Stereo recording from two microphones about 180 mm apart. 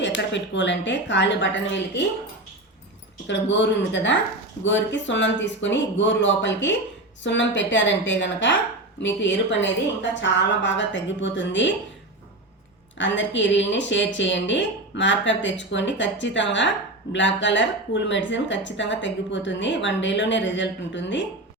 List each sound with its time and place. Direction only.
0.0 s a woman's voice: 90° left
3.2 s a woman's voice: 85° left
13.0 s speech: 90° left